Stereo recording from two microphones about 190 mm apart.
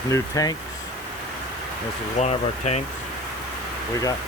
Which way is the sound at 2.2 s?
35° left (ahead or behind).